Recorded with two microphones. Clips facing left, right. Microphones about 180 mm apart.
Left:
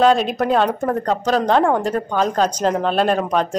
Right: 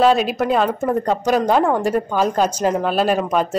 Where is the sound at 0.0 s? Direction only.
5° right (ahead or behind).